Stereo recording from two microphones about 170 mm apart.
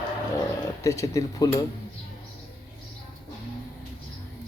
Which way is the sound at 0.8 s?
20° left (ahead or behind).